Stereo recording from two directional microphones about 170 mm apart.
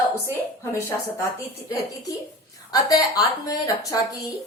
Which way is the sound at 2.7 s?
20° left (ahead or behind).